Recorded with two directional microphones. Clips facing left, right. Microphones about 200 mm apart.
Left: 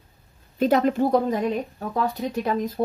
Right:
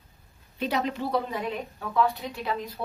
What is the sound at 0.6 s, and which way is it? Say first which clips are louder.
Speech: left 9 dB; 50° left (ahead or behind).